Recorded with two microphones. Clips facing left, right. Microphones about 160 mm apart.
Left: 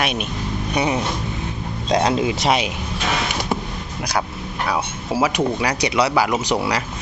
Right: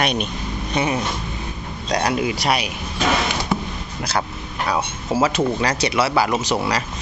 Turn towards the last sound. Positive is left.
turn(degrees=15)  # may be behind; listen again after turning